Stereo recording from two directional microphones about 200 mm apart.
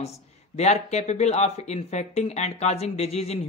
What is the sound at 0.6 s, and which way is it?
Speech, 35° left (ahead or behind).